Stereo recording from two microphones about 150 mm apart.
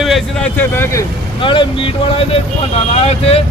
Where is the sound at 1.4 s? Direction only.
35° left (ahead or behind).